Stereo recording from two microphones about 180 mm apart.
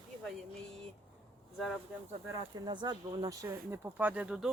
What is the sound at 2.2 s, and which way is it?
Speech, 25° right (ahead or behind).